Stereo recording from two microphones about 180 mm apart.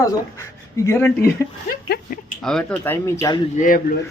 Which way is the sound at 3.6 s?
50° left (ahead or behind).